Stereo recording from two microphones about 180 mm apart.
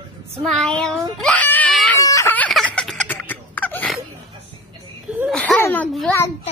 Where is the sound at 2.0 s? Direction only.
15° left (ahead or behind).